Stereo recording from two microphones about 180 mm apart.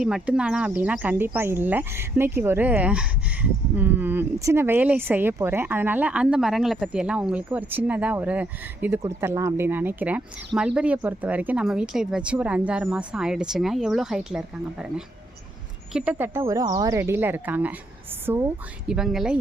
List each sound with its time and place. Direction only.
0.0 s speech: 5° right (ahead or behind)
18.9 s speech: 5° right (ahead or behind)